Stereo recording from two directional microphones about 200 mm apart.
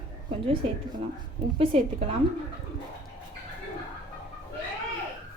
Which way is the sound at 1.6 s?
25° right (ahead or behind).